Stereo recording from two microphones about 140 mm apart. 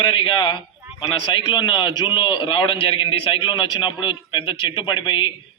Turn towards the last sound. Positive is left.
turn(degrees=35)  # may be behind; listen again after turning